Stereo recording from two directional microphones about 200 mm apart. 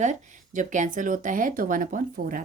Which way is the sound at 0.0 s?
40° right (ahead or behind).